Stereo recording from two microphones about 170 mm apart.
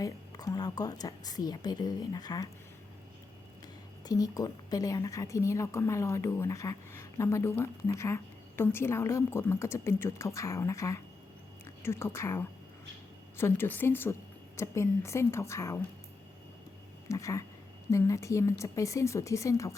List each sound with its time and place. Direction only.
0.0 s a woman's voice: 20° left (ahead or behind)
4.0 s a woman's voice: 20° left (ahead or behind)
17.1 s a woman's voice: 20° left (ahead or behind)